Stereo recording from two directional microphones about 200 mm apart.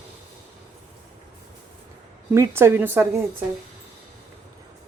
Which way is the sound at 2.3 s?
15° right (ahead or behind).